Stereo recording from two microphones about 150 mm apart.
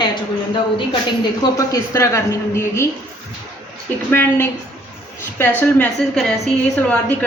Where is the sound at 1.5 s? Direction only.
20° left (ahead or behind).